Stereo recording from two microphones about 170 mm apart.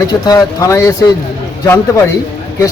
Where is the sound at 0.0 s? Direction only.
20° left (ahead or behind).